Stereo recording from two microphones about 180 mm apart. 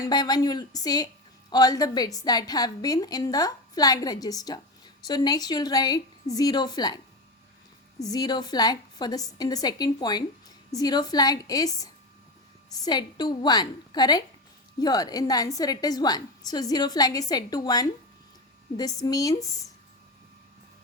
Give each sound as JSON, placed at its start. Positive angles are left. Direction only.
{"t": 0.0, "sound": "a woman's voice", "side_deg": 20}
{"t": 8.0, "sound": "a woman's voice", "side_deg": 20}
{"t": 19.0, "sound": "a woman's voice", "side_deg": 20}